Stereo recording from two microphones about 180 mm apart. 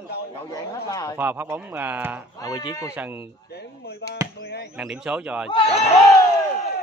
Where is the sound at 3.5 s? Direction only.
65° left (ahead or behind).